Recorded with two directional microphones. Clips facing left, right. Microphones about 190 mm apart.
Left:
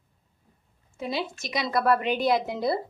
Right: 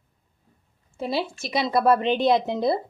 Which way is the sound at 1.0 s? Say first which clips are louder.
Right 4 dB; 30° right (ahead or behind).